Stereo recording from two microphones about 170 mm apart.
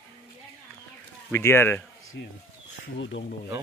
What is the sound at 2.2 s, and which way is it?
Speech, 90° left.